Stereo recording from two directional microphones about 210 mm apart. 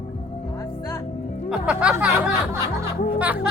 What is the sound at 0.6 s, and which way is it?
Music, 15° left (ahead or behind).